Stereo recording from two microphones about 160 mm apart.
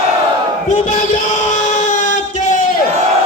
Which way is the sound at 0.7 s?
50° left (ahead or behind).